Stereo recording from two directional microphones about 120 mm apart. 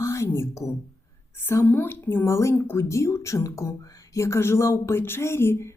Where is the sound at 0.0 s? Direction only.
25° left (ahead or behind).